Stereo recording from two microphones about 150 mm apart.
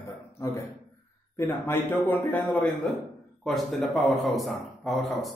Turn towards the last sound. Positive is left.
turn(degrees=0)  # may be behind; listen again after turning